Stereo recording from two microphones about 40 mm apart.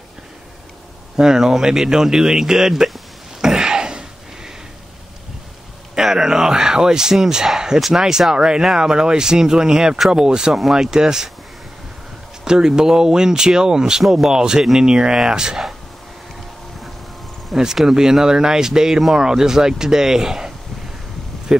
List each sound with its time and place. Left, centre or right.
1.1 s speech: centre
3.3 s a sound: centre
5.9 s speech: centre
12.4 s speech: centre
17.5 s speech: centre
17.8 s speech: centre
21.5 s vehicle: centre